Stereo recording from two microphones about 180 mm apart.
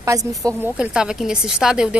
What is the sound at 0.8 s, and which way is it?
A woman's voice, 5° right (ahead or behind).